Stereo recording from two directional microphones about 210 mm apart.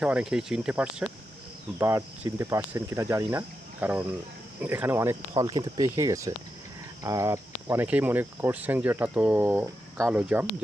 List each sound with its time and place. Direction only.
0.0 s speech: 5° right (ahead or behind)